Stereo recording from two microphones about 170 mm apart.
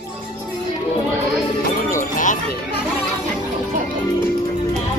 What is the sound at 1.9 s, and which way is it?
Music, 50° left (ahead or behind).